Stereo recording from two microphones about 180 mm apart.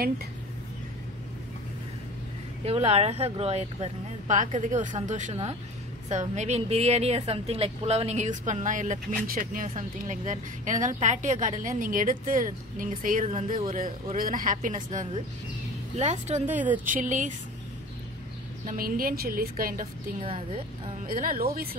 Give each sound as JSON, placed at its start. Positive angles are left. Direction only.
{"t": 2.6, "sound": "a woman's voice", "side_deg": -35}
{"t": 14.1, "sound": "a woman's voice", "side_deg": -50}
{"t": 16.4, "sound": "a woman's voice", "side_deg": -10}
{"t": 16.8, "sound": "a woman's voice", "side_deg": -45}
{"t": 18.7, "sound": "a woman's voice", "side_deg": -55}
{"t": 20.2, "sound": "speech", "side_deg": -30}
{"t": 21.1, "sound": "a woman's voice", "side_deg": -50}